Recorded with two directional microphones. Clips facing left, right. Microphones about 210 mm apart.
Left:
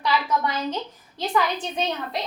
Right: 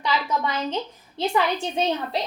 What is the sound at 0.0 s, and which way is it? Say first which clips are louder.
A woman's voice: left 1 dB; 25° right (ahead or behind).